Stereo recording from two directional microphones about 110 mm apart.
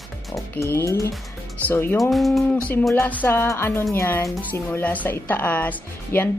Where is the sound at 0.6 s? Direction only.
30° left (ahead or behind).